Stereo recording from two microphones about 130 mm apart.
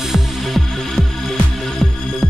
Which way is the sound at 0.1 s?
Centre (ahead or behind).